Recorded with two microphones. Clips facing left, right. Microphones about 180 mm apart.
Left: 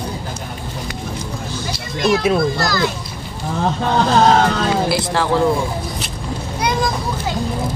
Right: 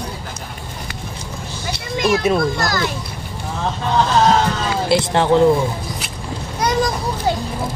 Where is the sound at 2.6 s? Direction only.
50° right (ahead or behind).